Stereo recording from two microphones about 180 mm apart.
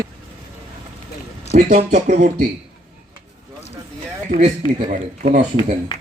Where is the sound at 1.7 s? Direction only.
45° right (ahead or behind).